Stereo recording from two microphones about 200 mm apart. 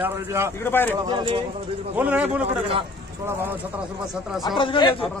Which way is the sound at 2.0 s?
10° right (ahead or behind).